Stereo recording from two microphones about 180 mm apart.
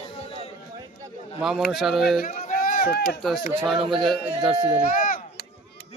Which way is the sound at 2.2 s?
50° left (ahead or behind).